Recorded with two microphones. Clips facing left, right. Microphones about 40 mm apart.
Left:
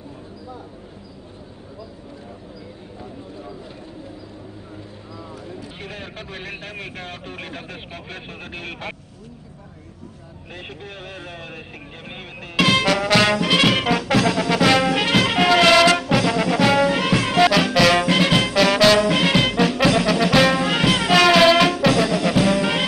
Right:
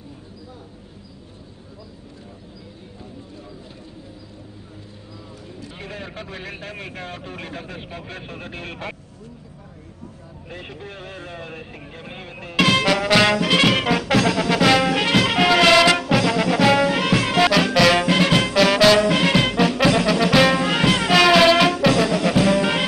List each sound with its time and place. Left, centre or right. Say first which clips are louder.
5.5 s a sound: right 3 dB; centre
7.1 s speech: even; centre
11.1 s speech: right 1 dB; centre
12.0 s music: even; centre
12.5 s music: even; centre